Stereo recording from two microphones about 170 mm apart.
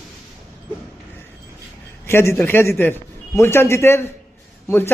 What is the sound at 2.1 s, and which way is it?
A man's voice, 15° left (ahead or behind).